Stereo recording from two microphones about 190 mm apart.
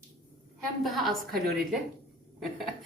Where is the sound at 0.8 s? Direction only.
Centre (ahead or behind).